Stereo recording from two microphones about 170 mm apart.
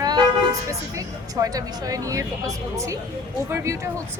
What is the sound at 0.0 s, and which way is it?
Vehicle, 25° right (ahead or behind).